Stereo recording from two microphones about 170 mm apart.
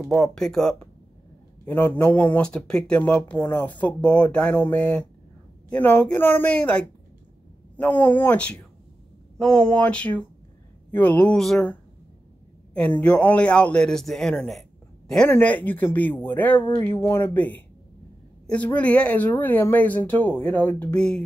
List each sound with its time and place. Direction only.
0.0 s speech: centre (ahead or behind)